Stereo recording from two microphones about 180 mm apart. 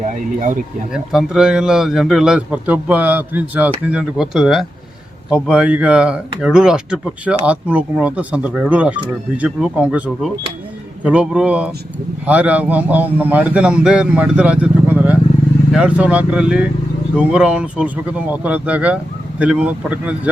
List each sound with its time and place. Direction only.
0.0 s speech: 45° right (ahead or behind)
0.9 s a man's voice: 5° right (ahead or behind)